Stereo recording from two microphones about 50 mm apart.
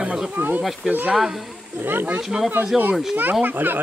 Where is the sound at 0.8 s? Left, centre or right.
Centre.